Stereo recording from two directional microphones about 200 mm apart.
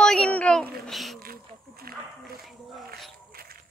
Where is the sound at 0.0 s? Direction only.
5° left (ahead or behind).